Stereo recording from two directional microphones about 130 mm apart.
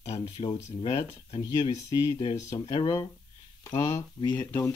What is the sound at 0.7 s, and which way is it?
Speech, 60° left (ahead or behind).